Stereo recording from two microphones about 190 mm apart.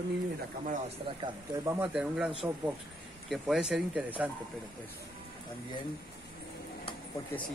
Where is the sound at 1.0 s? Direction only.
20° right (ahead or behind).